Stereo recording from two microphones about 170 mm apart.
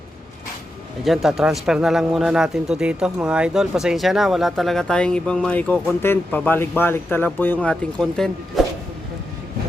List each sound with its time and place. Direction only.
1.0 s speech: centre (ahead or behind)